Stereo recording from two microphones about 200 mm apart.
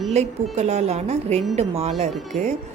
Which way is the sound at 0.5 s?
35° right (ahead or behind).